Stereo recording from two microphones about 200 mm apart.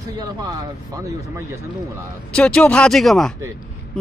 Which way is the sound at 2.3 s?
5° left (ahead or behind).